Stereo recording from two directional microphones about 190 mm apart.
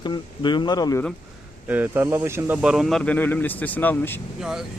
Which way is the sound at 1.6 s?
10° right (ahead or behind).